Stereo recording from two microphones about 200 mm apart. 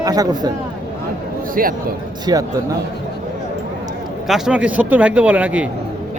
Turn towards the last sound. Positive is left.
turn(degrees=-5)  # may be behind; listen again after turning